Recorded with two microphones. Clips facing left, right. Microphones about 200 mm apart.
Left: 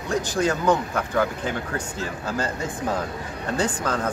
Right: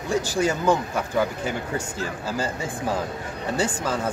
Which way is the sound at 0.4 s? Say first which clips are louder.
Left 1 dB; 10° right (ahead or behind).